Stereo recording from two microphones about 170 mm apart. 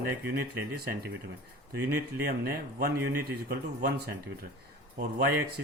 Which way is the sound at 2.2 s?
65° right (ahead or behind).